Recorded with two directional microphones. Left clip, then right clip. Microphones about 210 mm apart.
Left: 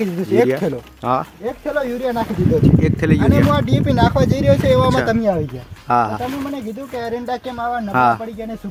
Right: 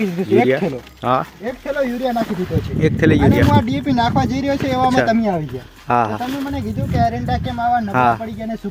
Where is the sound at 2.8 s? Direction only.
5° right (ahead or behind).